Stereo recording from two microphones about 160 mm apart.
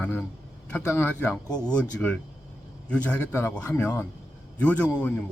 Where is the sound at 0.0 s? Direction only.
10° left (ahead or behind).